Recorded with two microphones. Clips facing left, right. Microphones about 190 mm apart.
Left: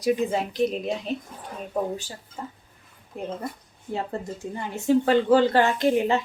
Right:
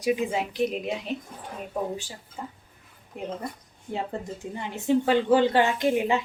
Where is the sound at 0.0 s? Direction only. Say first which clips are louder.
Left 2 dB; 10° right (ahead or behind).